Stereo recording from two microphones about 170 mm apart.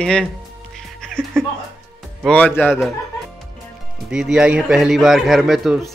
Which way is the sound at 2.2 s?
10° left (ahead or behind).